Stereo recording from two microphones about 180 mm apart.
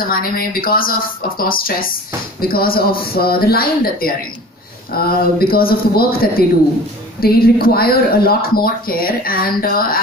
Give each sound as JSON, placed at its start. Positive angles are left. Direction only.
{"t": 0.0, "sound": "speech", "side_deg": 55}